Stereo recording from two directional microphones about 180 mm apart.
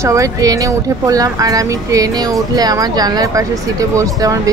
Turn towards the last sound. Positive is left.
turn(degrees=-20)  # may be behind; listen again after turning